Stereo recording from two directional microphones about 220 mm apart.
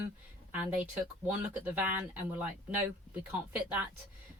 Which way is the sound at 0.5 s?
5° right (ahead or behind).